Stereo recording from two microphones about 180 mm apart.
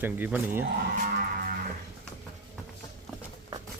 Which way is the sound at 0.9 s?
55° right (ahead or behind).